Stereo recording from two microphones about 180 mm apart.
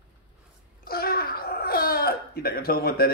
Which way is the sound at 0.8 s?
55° left (ahead or behind).